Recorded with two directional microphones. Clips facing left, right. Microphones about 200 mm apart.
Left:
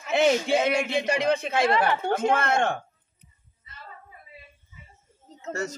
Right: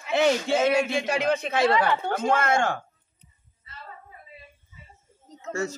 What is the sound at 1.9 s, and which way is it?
Speech, 20° left (ahead or behind).